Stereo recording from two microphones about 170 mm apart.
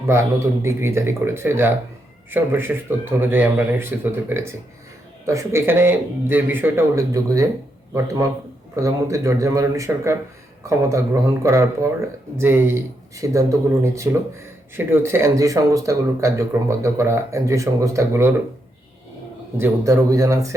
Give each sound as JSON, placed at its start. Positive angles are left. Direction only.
{"t": 0.1, "sound": "a man's voice", "side_deg": -15}
{"t": 19.5, "sound": "speech", "side_deg": -15}